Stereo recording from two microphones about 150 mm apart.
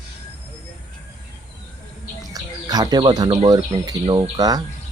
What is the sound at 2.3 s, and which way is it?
Bird, 25° right (ahead or behind).